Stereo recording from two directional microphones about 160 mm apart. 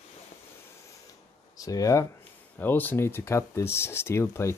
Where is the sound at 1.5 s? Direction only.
20° left (ahead or behind).